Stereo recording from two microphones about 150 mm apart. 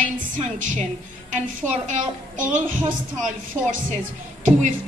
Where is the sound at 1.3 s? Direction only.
55° right (ahead or behind).